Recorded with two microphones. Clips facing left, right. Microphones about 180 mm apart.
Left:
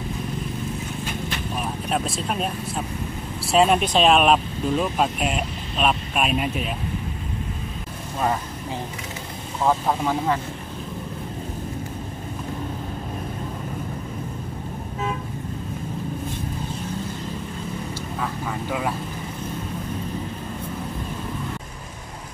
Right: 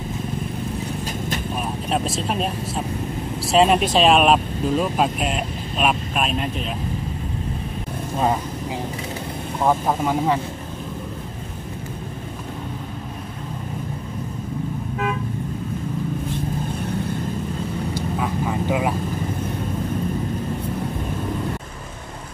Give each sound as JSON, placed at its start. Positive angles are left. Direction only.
{"t": 3.5, "sound": "speech", "side_deg": 0}
{"t": 9.6, "sound": "speech", "side_deg": -10}
{"t": 17.9, "sound": "vehicle", "side_deg": -15}